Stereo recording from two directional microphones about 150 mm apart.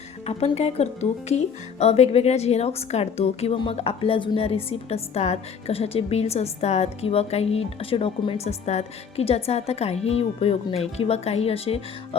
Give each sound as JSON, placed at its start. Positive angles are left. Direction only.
{"t": 0.3, "sound": "speech", "side_deg": 45}